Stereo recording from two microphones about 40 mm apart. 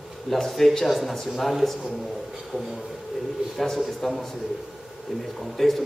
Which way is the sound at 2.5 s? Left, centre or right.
Left.